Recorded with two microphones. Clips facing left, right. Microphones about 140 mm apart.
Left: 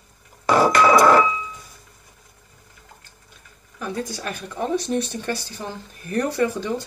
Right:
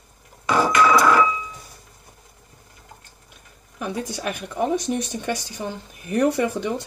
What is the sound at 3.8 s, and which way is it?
Speech, 15° right (ahead or behind).